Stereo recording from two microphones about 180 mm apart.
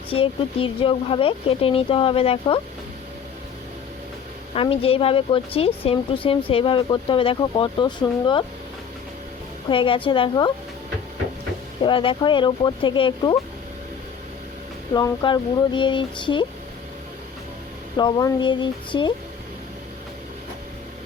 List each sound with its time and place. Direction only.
0.1 s speech: 30° left (ahead or behind)
4.5 s speech: 30° left (ahead or behind)
9.6 s speech: 30° left (ahead or behind)
11.8 s speech: 30° left (ahead or behind)
14.9 s speech: 25° left (ahead or behind)
17.9 s speech: 20° left (ahead or behind)